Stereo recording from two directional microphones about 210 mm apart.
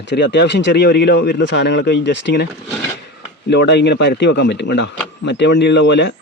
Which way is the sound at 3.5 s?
55° left (ahead or behind).